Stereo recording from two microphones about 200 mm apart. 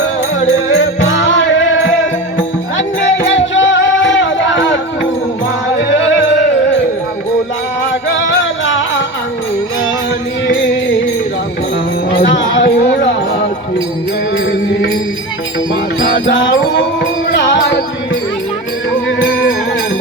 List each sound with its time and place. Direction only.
0.7 s music: 65° left (ahead or behind)
3.2 s music: 70° left (ahead or behind)
8.3 s music: 70° left (ahead or behind)
12.3 s a sound: 65° left (ahead or behind)
12.6 s music: 40° left (ahead or behind)
16.0 s music: 45° left (ahead or behind)
16.3 s music: 65° left (ahead or behind)